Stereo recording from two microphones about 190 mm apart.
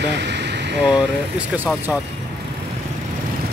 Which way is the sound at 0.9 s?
5° right (ahead or behind).